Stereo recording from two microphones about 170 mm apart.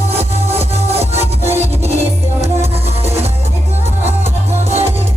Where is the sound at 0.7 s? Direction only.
40° right (ahead or behind).